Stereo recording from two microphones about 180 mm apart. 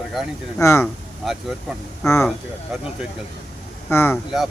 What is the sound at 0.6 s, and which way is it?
Speech, 15° left (ahead or behind).